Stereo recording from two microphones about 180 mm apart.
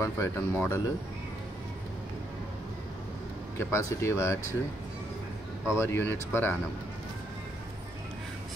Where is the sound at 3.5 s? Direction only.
15° left (ahead or behind).